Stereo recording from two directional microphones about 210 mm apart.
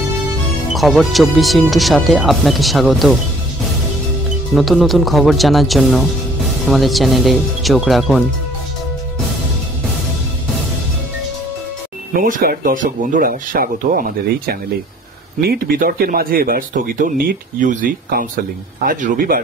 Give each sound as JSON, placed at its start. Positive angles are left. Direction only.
{"t": 0.7, "sound": "speech", "side_deg": 0}
{"t": 4.6, "sound": "speech", "side_deg": 0}
{"t": 12.1, "sound": "speech", "side_deg": -40}